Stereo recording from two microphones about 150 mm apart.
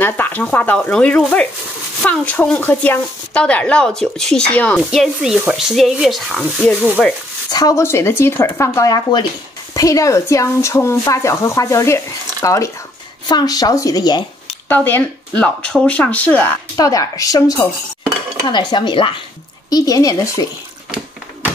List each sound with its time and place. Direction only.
0.0 s speech: 10° left (ahead or behind)
4.9 s speech: 5° right (ahead or behind)
6.8 s sizzle: 10° right (ahead or behind)
7.5 s speech: 20° left (ahead or behind)
14.7 s speech: 15° left (ahead or behind)
16.7 s speech: 25° left (ahead or behind)
19.7 s speech: 25° left (ahead or behind)